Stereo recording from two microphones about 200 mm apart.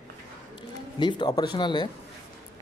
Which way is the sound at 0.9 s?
20° left (ahead or behind).